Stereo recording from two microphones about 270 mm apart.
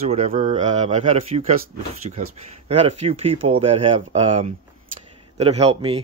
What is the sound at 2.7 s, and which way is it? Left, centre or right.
Speech, right.